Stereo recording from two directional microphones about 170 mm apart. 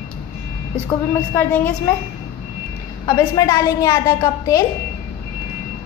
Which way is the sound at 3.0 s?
20° left (ahead or behind).